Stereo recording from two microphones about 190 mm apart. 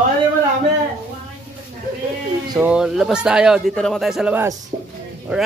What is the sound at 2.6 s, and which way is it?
A man's voice, 5° right (ahead or behind).